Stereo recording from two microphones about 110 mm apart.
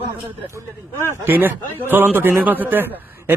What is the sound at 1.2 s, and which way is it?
A man's voice, 20° right (ahead or behind).